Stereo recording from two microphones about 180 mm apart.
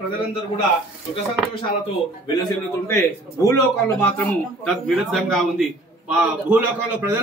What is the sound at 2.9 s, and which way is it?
A man's voice, 15° left (ahead or behind).